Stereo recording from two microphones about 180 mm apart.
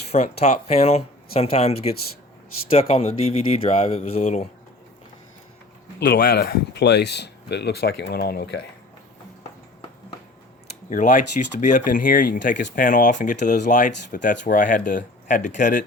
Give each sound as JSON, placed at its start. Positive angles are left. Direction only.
{"t": 0.1, "sound": "speech", "side_deg": 40}
{"t": 6.0, "sound": "speech", "side_deg": 55}
{"t": 10.8, "sound": "speech", "side_deg": 45}